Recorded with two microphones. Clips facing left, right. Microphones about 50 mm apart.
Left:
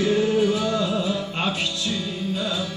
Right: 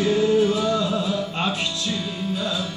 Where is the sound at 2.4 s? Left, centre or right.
Centre.